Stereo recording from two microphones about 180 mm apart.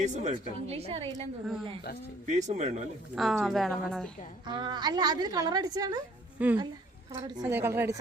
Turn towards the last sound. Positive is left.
turn(degrees=-10)  # may be behind; listen again after turning